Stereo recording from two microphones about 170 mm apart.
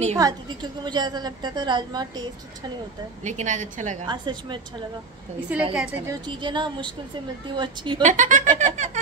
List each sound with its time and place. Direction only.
0.2 s a woman's voice: 25° right (ahead or behind)
3.3 s speech: 45° right (ahead or behind)
4.0 s a woman's voice: 25° right (ahead or behind)
5.5 s a woman's voice: 10° right (ahead or behind)
6.2 s a woman's voice: 25° right (ahead or behind)
8.0 s speech: 50° right (ahead or behind)